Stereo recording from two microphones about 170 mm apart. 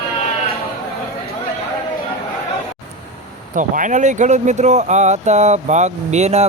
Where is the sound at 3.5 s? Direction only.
50° right (ahead or behind).